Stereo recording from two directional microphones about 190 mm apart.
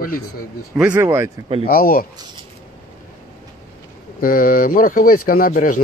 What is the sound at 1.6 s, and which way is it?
Speech, 50° left (ahead or behind).